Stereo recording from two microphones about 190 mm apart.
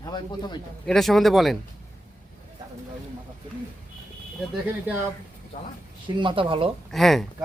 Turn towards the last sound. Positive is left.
turn(degrees=0)  # may be behind; listen again after turning